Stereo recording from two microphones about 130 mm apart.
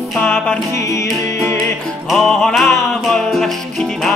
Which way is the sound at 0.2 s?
15° left (ahead or behind).